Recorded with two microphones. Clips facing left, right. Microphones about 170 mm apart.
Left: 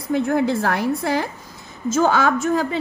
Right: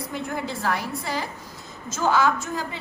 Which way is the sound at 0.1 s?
55° left (ahead or behind).